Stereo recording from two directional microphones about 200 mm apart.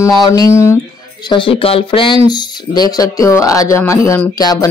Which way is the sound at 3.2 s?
15° left (ahead or behind).